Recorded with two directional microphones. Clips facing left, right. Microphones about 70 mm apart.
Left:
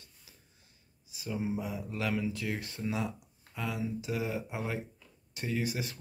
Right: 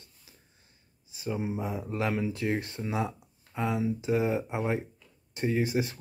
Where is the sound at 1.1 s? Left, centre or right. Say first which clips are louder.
Right 2 dB; right.